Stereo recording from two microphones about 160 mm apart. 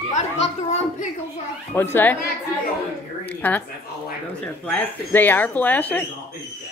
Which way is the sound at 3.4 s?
10° left (ahead or behind).